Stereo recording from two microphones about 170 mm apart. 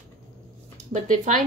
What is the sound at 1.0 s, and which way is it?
Speech, 50° right (ahead or behind).